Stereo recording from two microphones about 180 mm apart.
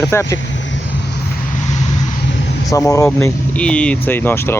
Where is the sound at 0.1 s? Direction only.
15° left (ahead or behind).